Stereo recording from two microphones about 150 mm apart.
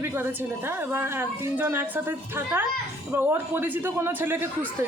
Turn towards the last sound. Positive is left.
turn(degrees=-15)  # may be behind; listen again after turning